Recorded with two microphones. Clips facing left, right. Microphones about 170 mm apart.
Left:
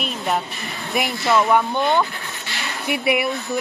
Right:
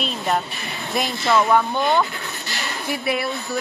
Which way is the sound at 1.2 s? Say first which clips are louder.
Even; centre (ahead or behind).